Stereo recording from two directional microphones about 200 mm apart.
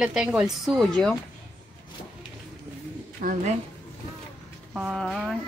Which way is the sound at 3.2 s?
45° right (ahead or behind).